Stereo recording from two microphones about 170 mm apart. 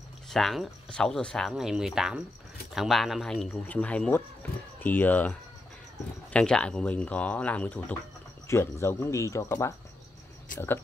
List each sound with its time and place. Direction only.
0.3 s speech: centre (ahead or behind); by 9.8 s 15° left (ahead or behind)